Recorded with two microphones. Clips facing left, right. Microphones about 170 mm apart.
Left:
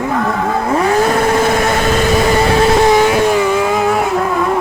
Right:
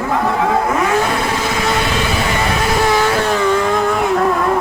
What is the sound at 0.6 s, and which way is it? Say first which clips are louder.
Vehicle: left 3 dB; 30° left (ahead or behind).